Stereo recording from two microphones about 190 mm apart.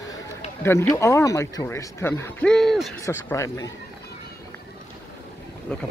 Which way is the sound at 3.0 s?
15° left (ahead or behind).